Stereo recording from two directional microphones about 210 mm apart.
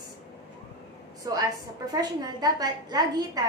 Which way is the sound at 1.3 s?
20° right (ahead or behind).